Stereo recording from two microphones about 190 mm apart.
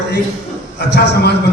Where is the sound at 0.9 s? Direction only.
60° left (ahead or behind).